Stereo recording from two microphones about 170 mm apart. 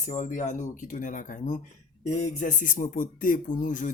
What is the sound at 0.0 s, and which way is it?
Speech, 45° left (ahead or behind).